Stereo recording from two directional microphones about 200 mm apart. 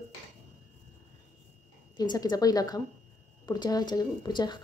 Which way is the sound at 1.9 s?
20° left (ahead or behind).